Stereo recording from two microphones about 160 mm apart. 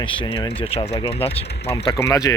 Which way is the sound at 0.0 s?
30° left (ahead or behind).